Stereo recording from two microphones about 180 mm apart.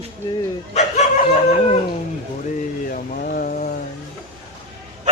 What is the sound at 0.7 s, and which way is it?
Dog, 40° left (ahead or behind).